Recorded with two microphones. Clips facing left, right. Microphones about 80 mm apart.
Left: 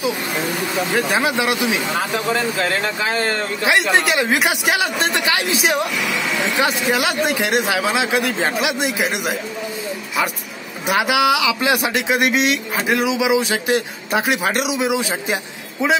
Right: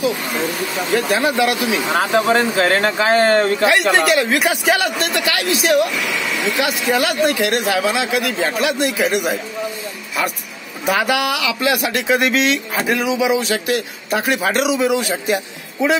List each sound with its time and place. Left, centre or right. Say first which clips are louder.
1.1 s speech: right 2 dB; centre
2.0 s speech: right 5 dB; right
3.6 s a man's voice: right 2 dB; centre
6.9 s speech: right 2 dB; centre
8.1 s a man's voice: even; left
8.5 s a man's voice: right 2 dB; centre
10.9 s a man's voice: left 1 dB; centre